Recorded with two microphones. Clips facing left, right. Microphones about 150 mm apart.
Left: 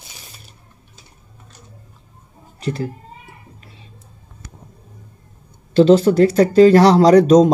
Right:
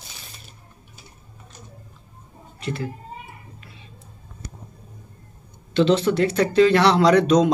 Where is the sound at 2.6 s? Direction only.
35° left (ahead or behind).